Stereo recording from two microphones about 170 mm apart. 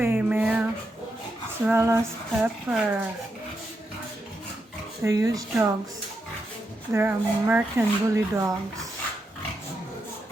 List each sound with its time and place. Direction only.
0.0 s a sound: 10° right (ahead or behind)
1.6 s speech: 15° right (ahead or behind)
5.0 s speech: 20° right (ahead or behind)
6.9 s speech: 10° right (ahead or behind)